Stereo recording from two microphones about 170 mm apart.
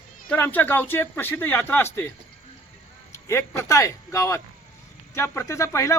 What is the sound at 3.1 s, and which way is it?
Speech, 15° left (ahead or behind).